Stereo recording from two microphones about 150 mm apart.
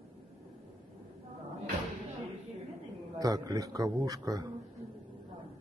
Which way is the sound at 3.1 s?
25° right (ahead or behind).